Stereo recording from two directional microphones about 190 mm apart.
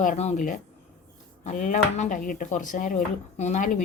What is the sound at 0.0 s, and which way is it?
Speech, 40° left (ahead or behind).